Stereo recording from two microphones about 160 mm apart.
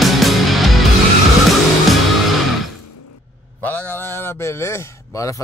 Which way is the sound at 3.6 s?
10° left (ahead or behind).